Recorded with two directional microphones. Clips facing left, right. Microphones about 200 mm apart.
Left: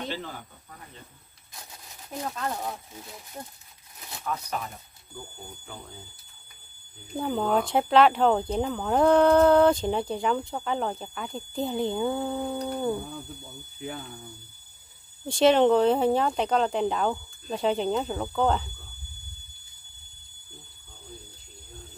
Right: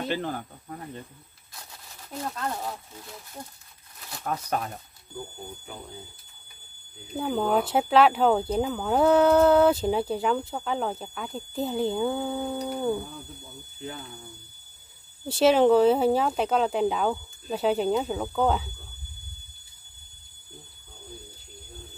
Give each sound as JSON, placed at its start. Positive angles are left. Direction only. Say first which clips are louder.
{"t": 0.1, "sound": "speech", "louder": "right 6 dB", "side_deg": -55}
{"t": 2.2, "sound": "speech", "louder": "even", "side_deg": 0}
{"t": 4.2, "sound": "speech", "louder": "right 3 dB", "side_deg": -55}
{"t": 7.2, "sound": "speech", "louder": "right 1 dB", "side_deg": -5}
{"t": 13.7, "sound": "speech", "louder": "left 2 dB", "side_deg": 10}
{"t": 15.2, "sound": "speech", "louder": "even", "side_deg": -5}